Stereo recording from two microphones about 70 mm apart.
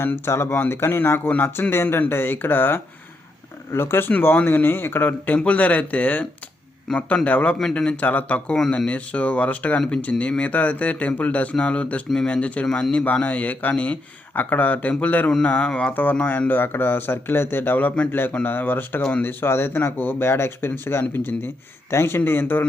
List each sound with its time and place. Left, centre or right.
0.0 s speech: left
7.3 s speech: left
12.6 s speech: centre
13.2 s speech: left